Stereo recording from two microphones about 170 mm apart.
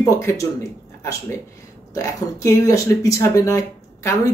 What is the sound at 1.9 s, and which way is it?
A man's voice, 20° left (ahead or behind).